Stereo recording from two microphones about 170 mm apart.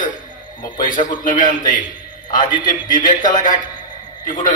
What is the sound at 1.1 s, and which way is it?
Speech, 50° left (ahead or behind).